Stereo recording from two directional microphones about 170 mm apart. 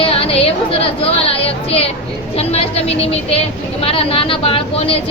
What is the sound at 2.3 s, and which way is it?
A woman's voice, 35° left (ahead or behind).